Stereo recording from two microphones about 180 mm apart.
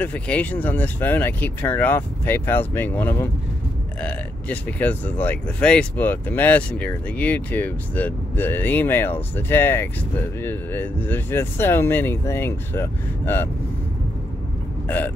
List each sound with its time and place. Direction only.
0.0 s speech: 5° left (ahead or behind)
14.9 s speech: 10° left (ahead or behind)